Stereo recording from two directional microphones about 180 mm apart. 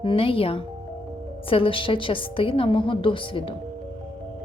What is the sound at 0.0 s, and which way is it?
A woman's voice, 30° left (ahead or behind).